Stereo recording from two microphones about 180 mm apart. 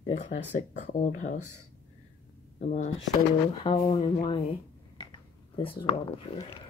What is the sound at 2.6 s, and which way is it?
Speech, 45° left (ahead or behind).